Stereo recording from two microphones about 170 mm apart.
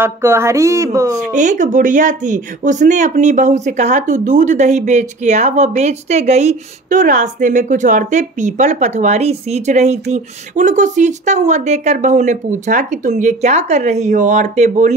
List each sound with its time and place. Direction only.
0.0 s speech: 15° right (ahead or behind)
1.3 s speech: 45° right (ahead or behind)